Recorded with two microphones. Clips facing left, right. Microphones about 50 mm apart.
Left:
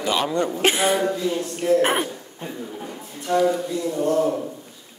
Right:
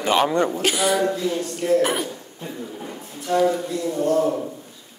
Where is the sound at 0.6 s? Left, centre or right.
Left.